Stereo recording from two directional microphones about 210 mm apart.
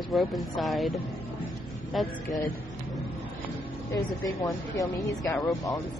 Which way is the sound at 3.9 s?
15° left (ahead or behind).